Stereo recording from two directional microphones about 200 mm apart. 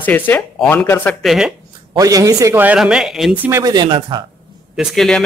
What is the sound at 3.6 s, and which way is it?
Speech, 20° right (ahead or behind).